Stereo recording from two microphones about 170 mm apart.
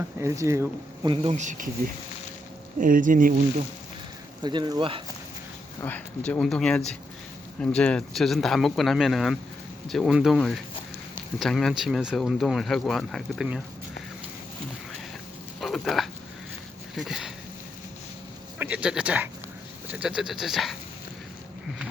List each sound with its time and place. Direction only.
0.2 s speech: 15° right (ahead or behind)
1.1 s speech: 35° right (ahead or behind)
2.7 s speech: 50° right (ahead or behind)
4.4 s speech: 25° right (ahead or behind)
5.8 s speech: 10° left (ahead or behind)
15.6 s a sound: centre (ahead or behind)
16.9 s speech: centre (ahead or behind)
18.6 s speech: 10° right (ahead or behind)